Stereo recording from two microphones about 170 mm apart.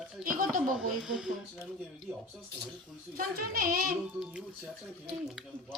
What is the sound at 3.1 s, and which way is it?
Speech, 55° right (ahead or behind).